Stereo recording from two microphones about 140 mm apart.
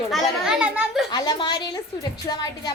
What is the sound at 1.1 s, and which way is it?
A woman's voice, 25° left (ahead or behind).